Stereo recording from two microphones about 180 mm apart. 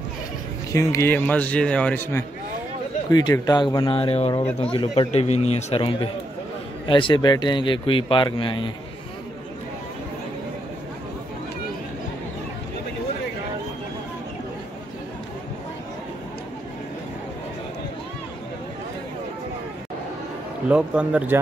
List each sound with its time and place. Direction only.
0.7 s a man's voice: 15° left (ahead or behind)
20.7 s speech: 5° right (ahead or behind)